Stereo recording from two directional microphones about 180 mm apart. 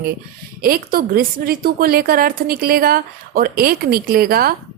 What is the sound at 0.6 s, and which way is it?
A woman's voice, 55° right (ahead or behind).